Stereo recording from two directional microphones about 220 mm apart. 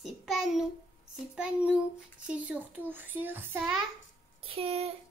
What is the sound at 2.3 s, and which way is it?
Child singing, 5° right (ahead or behind).